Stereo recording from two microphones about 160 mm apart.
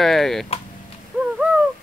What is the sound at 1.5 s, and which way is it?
Owl, 10° right (ahead or behind).